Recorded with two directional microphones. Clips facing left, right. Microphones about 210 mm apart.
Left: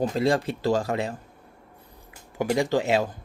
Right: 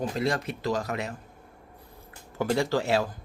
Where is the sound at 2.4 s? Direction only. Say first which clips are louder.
Left 2 dB; 15° left (ahead or behind).